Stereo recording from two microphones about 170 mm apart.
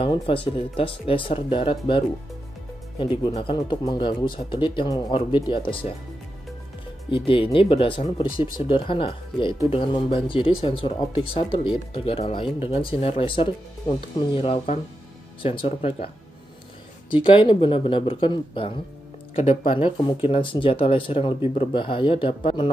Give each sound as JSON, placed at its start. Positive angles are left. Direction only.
{"t": 0.0, "sound": "speech", "side_deg": 30}
{"t": 3.0, "sound": "speech", "side_deg": 25}
{"t": 7.1, "sound": "speech", "side_deg": 30}
{"t": 17.1, "sound": "speech", "side_deg": 30}